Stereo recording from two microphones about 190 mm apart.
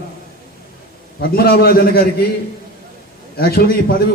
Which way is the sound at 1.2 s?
55° left (ahead or behind).